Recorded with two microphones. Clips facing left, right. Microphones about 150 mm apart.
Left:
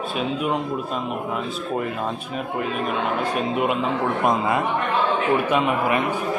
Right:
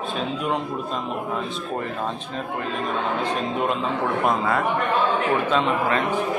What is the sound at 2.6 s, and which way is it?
A man's voice, 10° left (ahead or behind).